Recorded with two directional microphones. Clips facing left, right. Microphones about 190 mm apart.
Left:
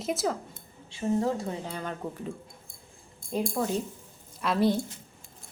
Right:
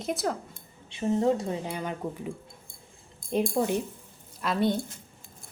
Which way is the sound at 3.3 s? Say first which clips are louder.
Right 3 dB; 25° right (ahead or behind).